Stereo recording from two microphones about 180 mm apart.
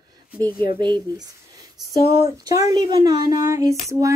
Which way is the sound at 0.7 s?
25° right (ahead or behind).